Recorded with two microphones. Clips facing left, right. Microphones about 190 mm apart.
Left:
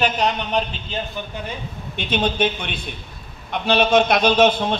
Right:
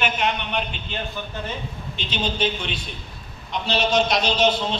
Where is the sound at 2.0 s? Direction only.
55° left (ahead or behind).